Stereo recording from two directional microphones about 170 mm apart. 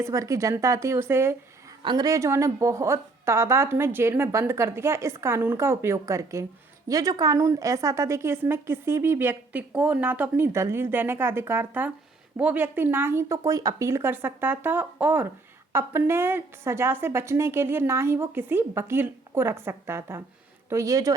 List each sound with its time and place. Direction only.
0.0 s a woman's voice: 20° right (ahead or behind)
1.8 s a woman's voice: 25° right (ahead or behind)